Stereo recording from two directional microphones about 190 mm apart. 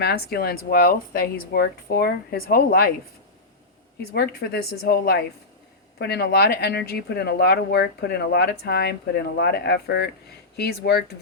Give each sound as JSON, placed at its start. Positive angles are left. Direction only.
{"t": 0.0, "sound": "speech", "side_deg": 55}
{"t": 4.1, "sound": "speech", "side_deg": 55}